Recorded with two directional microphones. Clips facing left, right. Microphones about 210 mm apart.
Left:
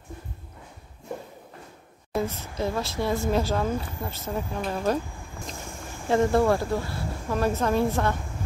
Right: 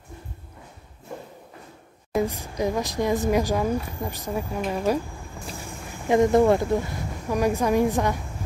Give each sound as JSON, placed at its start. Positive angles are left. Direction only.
{"t": 2.1, "sound": "a woman's voice", "side_deg": -15}
{"t": 6.0, "sound": "a woman's voice", "side_deg": -15}